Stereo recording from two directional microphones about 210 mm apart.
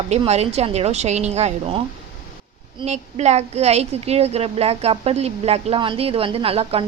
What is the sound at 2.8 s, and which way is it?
Speech, 30° right (ahead or behind).